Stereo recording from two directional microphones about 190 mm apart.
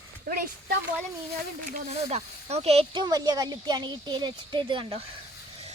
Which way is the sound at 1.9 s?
35° right (ahead or behind).